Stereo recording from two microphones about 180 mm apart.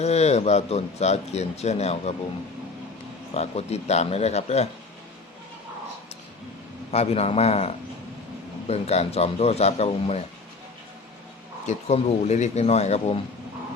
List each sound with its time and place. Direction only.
0.0 s speech: 35° left (ahead or behind)
3.3 s speech: 35° left (ahead or behind)
6.9 s speech: 35° left (ahead or behind)
11.6 s speech: 40° left (ahead or behind)